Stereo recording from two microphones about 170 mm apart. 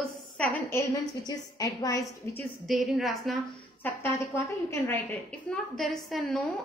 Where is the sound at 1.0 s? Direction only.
25° left (ahead or behind).